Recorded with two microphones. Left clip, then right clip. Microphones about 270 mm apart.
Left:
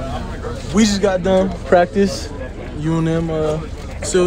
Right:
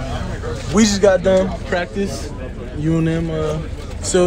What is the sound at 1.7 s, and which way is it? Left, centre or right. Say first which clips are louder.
Speech: left 8 dB; left.